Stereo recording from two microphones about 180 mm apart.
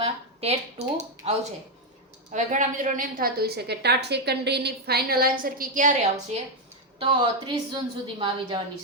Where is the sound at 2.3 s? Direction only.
45° right (ahead or behind).